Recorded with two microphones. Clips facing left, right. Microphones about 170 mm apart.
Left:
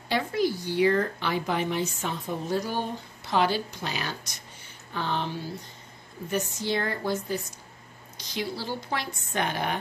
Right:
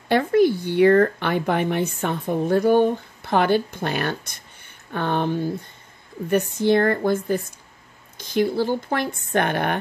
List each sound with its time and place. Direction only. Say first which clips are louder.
0.1 s speech: right 9 dB; 55° right (ahead or behind)